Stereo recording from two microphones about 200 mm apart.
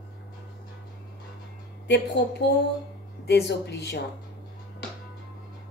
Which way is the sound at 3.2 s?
55° left (ahead or behind).